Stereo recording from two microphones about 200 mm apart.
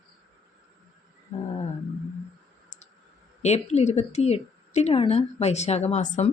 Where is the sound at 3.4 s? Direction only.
35° left (ahead or behind).